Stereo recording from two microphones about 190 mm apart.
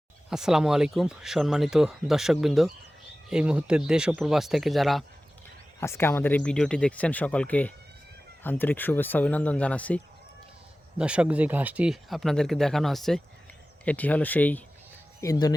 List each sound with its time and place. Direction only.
0.3 s speech: 5° right (ahead or behind)
5.8 s speech: 15° left (ahead or behind)
10.9 s speech: 5° right (ahead or behind); by 15.5 s 20° left (ahead or behind)